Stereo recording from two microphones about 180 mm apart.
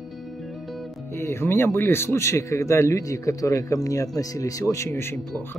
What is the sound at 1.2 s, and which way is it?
A man's voice, 15° left (ahead or behind).